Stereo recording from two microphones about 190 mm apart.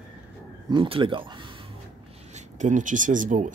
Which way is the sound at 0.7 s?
25° right (ahead or behind).